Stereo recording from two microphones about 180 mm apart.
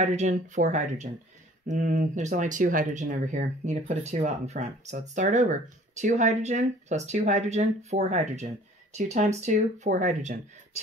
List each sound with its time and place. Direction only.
0.0 s speech: 40° right (ahead or behind)